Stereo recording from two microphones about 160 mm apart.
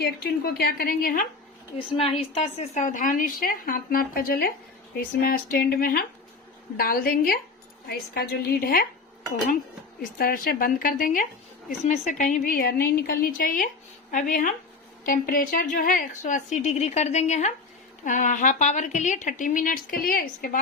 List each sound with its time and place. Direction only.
0.0 s a woman's voice: 80° left; by 1.3 s 60° left (ahead or behind)
1.9 s a woman's voice: 35° left (ahead or behind); by 7.3 s 65° left (ahead or behind)
7.9 s a woman's voice: 75° left (ahead or behind)
10.0 s a woman's voice: 65° left (ahead or behind)